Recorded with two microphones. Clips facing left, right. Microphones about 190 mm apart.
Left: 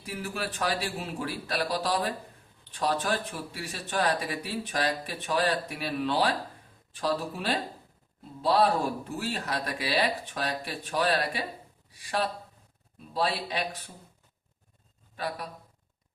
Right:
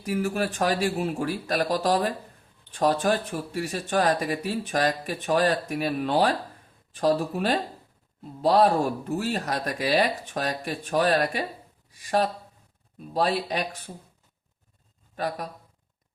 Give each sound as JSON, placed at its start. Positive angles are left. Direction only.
{"t": 0.0, "sound": "speech", "side_deg": -45}
{"t": 15.1, "sound": "a man's voice", "side_deg": -45}